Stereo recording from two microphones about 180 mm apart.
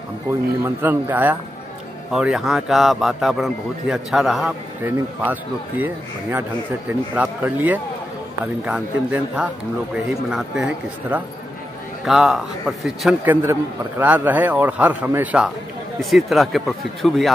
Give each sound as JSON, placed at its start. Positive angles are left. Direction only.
{"t": 0.3, "sound": "a man's voice", "side_deg": -15}
{"t": 7.2, "sound": "a man's voice", "side_deg": -10}
{"t": 13.2, "sound": "a man's voice", "side_deg": -10}